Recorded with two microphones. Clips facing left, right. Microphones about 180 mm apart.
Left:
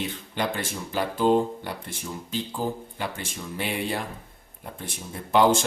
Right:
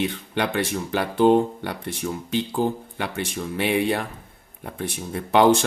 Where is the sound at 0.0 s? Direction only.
70° right (ahead or behind).